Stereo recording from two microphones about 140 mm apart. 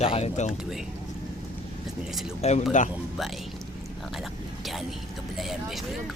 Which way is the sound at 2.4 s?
60° left (ahead or behind).